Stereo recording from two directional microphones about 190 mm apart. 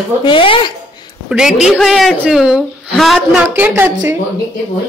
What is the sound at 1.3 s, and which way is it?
Speech, 5° right (ahead or behind).